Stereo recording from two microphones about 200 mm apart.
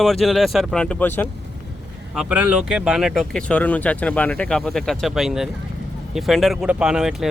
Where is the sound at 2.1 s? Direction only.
5° right (ahead or behind).